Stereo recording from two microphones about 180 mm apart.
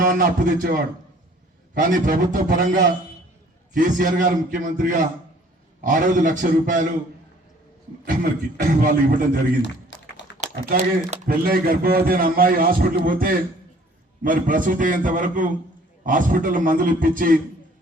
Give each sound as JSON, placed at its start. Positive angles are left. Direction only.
{"t": 0.0, "sound": "a man's voice", "side_deg": -50}
{"t": 8.0, "sound": "a man's voice", "side_deg": -50}